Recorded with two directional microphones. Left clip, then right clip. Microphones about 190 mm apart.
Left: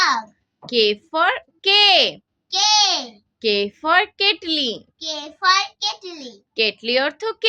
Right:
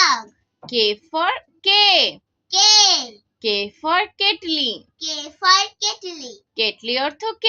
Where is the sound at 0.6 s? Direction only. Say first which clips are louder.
Left 1 dB; 20° left (ahead or behind).